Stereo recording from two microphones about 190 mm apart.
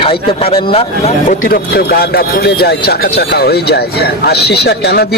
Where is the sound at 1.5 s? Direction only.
55° left (ahead or behind).